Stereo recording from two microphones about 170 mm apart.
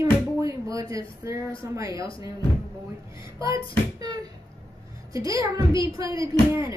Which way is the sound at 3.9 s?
20° right (ahead or behind).